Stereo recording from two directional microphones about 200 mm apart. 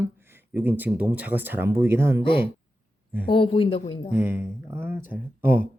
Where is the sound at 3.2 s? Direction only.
25° left (ahead or behind).